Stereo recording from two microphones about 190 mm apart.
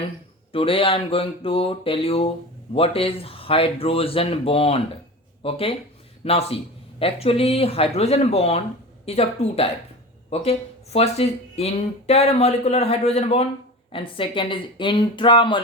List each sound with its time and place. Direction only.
0.5 s speech: 30° left (ahead or behind)
10.9 s speech: 35° left (ahead or behind)